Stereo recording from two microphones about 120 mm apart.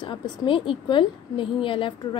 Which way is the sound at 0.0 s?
45° left (ahead or behind).